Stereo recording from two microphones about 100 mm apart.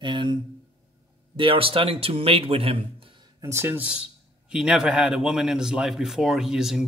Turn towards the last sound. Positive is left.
turn(degrees=-5)  # may be behind; listen again after turning